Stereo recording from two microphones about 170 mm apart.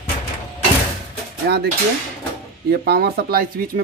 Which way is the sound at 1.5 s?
75° right (ahead or behind).